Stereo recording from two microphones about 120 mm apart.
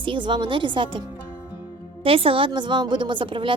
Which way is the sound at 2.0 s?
50° right (ahead or behind).